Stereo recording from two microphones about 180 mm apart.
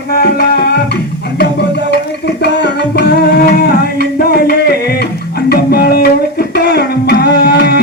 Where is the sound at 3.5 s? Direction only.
55° left (ahead or behind).